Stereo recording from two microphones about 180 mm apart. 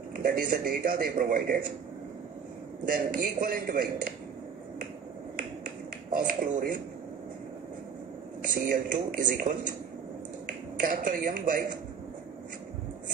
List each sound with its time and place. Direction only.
0.1 s a man's voice: 50° right (ahead or behind)
2.9 s a man's voice: 50° right (ahead or behind)
6.1 s a man's voice: 50° right (ahead or behind)
8.6 s a man's voice: 50° right (ahead or behind)
10.9 s a man's voice: 50° right (ahead or behind)